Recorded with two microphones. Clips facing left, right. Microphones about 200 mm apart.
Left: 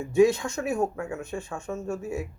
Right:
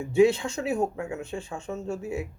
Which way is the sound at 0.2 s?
30° right (ahead or behind).